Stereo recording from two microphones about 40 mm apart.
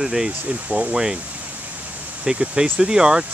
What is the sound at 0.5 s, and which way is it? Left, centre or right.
Speech, right.